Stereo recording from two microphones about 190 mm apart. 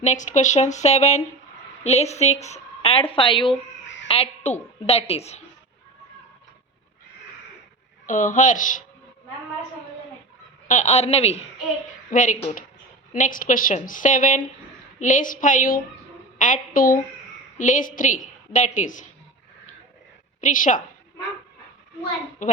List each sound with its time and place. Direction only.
0.0 s a woman's voice: 40° left (ahead or behind)
3.8 s a sound: 75° left (ahead or behind)
4.1 s a woman's voice: 35° left (ahead or behind)
8.0 s a woman's voice: 40° left (ahead or behind)
10.7 s a woman's voice: 40° left (ahead or behind)
12.1 s a woman's voice: 45° left (ahead or behind)
20.4 s a woman's voice: 40° left (ahead or behind)
22.4 s a woman's voice: 45° left (ahead or behind)